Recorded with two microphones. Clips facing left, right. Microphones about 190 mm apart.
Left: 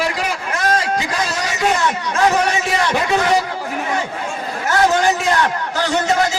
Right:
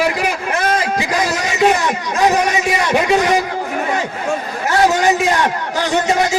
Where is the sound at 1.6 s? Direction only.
15° right (ahead or behind).